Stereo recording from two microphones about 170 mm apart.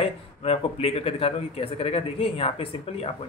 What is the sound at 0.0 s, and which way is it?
A man's voice, 35° left (ahead or behind).